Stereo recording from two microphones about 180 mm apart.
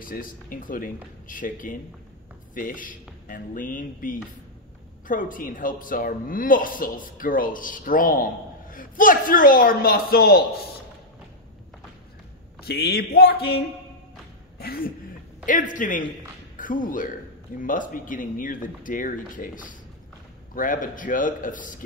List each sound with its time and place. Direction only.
0.0 s speech: 50° left (ahead or behind)
12.6 s speech: 60° left (ahead or behind)
14.6 s speech: 55° left (ahead or behind)
15.4 s speech: 45° left (ahead or behind)